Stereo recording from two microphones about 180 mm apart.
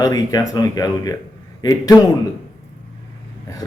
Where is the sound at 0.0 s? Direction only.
20° left (ahead or behind).